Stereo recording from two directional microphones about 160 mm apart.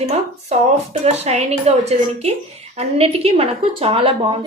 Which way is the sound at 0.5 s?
45° right (ahead or behind).